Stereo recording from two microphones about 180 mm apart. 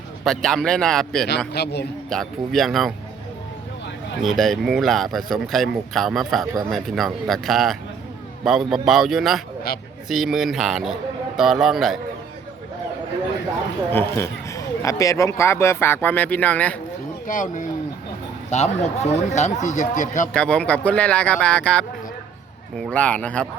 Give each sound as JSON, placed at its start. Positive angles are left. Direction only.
{"t": 0.3, "sound": "speech", "side_deg": 5}
{"t": 1.5, "sound": "a man's voice", "side_deg": 65}
{"t": 2.0, "sound": "speech", "side_deg": 0}
{"t": 4.2, "sound": "speech", "side_deg": 0}
{"t": 13.9, "sound": "speech", "side_deg": 15}
{"t": 17.2, "sound": "speech", "side_deg": 45}
{"t": 20.3, "sound": "speech", "side_deg": 5}